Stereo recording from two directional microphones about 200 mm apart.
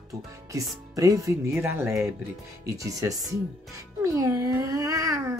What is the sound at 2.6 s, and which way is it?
Speech, 15° right (ahead or behind).